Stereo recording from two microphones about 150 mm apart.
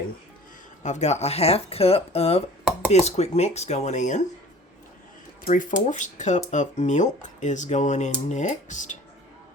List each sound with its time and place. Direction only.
0.8 s speech: 50° left (ahead or behind)
5.5 s speech: 60° left (ahead or behind)